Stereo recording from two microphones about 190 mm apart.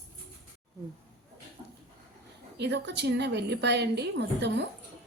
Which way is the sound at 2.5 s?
65° right (ahead or behind).